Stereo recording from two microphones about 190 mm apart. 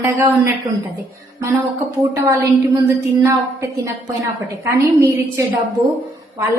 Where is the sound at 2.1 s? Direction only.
15° right (ahead or behind).